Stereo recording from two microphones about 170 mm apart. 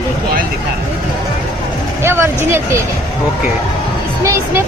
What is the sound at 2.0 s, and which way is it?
Speech, 15° right (ahead or behind).